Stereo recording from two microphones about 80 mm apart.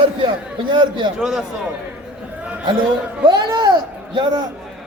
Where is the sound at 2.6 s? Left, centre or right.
Right.